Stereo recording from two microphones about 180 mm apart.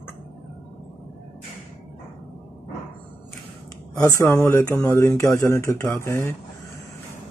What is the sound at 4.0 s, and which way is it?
Speech, 20° left (ahead or behind).